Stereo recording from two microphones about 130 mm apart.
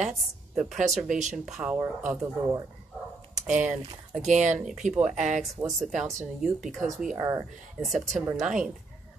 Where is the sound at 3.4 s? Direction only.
70° right (ahead or behind).